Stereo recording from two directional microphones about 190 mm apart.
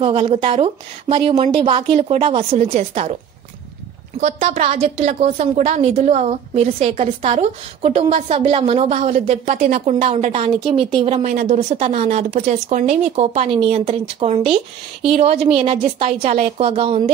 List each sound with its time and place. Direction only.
0.0 s a woman's voice: 30° right (ahead or behind)
4.2 s a woman's voice: 40° right (ahead or behind)